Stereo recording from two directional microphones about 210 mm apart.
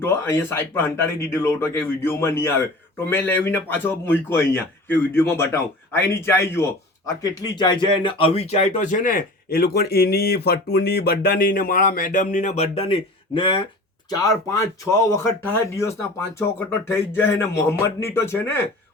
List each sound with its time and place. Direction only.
0.1 s a man's voice: 10° left (ahead or behind)